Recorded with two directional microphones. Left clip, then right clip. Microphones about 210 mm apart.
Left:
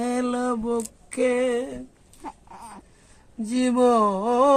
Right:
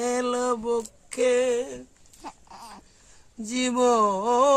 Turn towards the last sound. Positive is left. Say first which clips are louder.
# left 1 dB
turn(degrees=-20)  # may be behind; listen again after turning